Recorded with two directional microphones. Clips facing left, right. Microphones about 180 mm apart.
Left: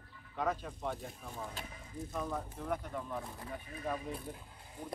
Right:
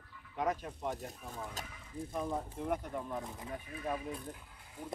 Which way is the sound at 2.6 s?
10° right (ahead or behind).